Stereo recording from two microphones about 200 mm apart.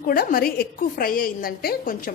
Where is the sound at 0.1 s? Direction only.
45° left (ahead or behind).